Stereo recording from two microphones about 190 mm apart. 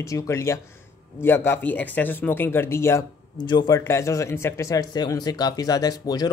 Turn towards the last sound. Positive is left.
turn(degrees=20)  # may be behind; listen again after turning